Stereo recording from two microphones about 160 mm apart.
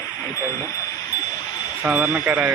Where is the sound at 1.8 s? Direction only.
10° right (ahead or behind).